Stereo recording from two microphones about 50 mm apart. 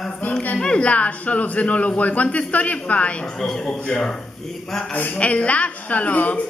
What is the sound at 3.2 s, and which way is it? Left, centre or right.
Speech, centre.